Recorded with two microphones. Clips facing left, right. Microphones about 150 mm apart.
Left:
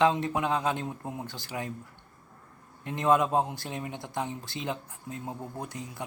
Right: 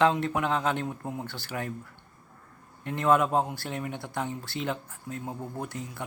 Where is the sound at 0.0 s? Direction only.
15° left (ahead or behind).